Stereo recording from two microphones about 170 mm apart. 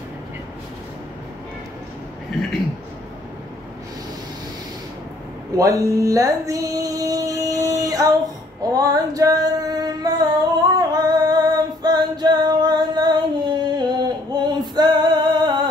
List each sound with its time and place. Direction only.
5.6 s female singing: 20° right (ahead or behind)
8.6 s music: 20° right (ahead or behind)